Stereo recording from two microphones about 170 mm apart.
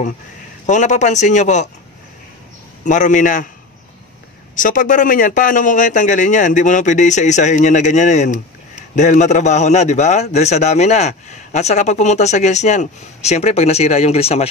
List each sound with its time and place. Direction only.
0.7 s speech: 45° left (ahead or behind)
2.8 s speech: 45° left (ahead or behind)
4.6 s a man's voice: 50° left (ahead or behind)